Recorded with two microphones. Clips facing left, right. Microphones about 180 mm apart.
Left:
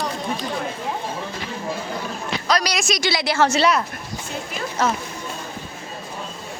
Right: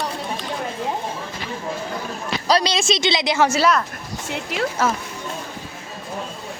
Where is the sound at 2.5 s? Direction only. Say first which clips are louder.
Right 3 dB; 30° right (ahead or behind); by 3.8 s 5° right (ahead or behind).